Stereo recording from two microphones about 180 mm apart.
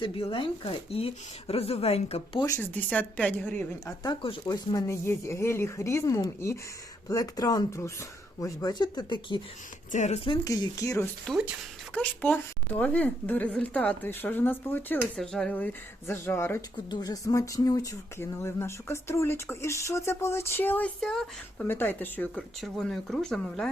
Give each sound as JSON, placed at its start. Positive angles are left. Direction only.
{"t": 0.0, "sound": "speech", "side_deg": 30}
{"t": 2.5, "sound": "speech", "side_deg": 10}
{"t": 4.0, "sound": "speech", "side_deg": 25}
{"t": 9.9, "sound": "speech", "side_deg": 40}
{"t": 11.3, "sound": "speech", "side_deg": -5}
{"t": 11.9, "sound": "speech", "side_deg": 10}